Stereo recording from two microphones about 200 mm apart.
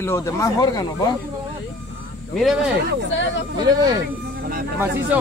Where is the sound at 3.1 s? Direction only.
65° left (ahead or behind).